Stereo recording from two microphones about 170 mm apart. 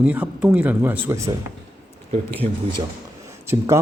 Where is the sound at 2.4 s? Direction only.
40° right (ahead or behind).